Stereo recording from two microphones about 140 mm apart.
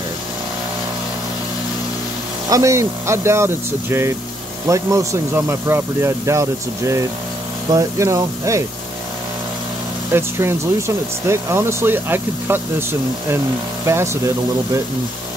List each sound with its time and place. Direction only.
2.5 s speech: 20° right (ahead or behind)
10.1 s speech: 20° right (ahead or behind)
13.8 s speech: 20° right (ahead or behind)